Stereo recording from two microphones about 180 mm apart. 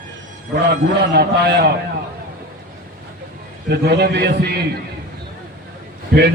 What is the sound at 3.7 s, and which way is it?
Speech, 65° right (ahead or behind).